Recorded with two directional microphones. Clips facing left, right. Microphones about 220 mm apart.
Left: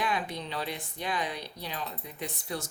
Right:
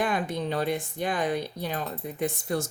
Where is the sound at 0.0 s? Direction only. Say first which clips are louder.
Right 5 dB; 50° right (ahead or behind).